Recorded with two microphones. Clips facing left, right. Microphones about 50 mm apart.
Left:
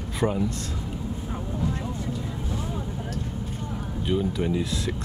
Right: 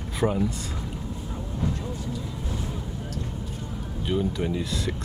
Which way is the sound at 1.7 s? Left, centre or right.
Left.